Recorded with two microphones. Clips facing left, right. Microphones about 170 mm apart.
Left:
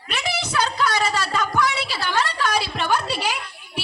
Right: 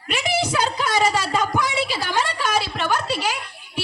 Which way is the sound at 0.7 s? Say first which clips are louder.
Right 2 dB; 20° right (ahead or behind).